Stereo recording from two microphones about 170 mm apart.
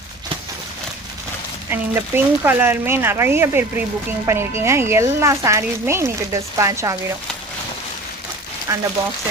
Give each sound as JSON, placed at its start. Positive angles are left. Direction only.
{"t": 1.7, "sound": "speech", "side_deg": -15}
{"t": 8.7, "sound": "speech", "side_deg": -15}